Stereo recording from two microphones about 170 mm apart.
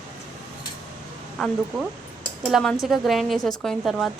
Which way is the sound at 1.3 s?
Centre (ahead or behind).